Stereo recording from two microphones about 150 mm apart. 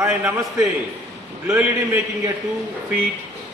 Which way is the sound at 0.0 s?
20° right (ahead or behind).